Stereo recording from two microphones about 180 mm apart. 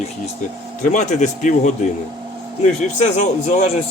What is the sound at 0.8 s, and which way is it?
A man's voice, 45° left (ahead or behind).